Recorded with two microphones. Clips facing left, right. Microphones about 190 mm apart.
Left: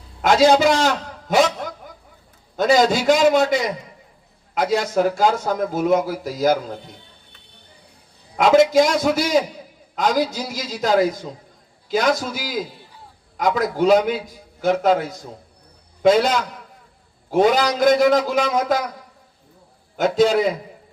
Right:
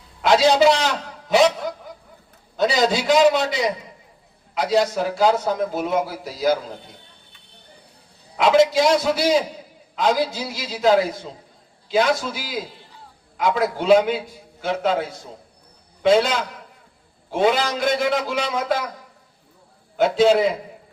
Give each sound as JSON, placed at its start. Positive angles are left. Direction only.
{"t": 0.2, "sound": "a man's voice", "side_deg": 45}
{"t": 2.6, "sound": "a man's voice", "side_deg": 50}
{"t": 8.4, "sound": "a man's voice", "side_deg": 45}
{"t": 17.3, "sound": "a man's voice", "side_deg": 45}
{"t": 20.0, "sound": "a man's voice", "side_deg": 45}